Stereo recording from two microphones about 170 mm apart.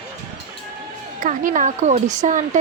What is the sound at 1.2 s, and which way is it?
Speech, 50° right (ahead or behind).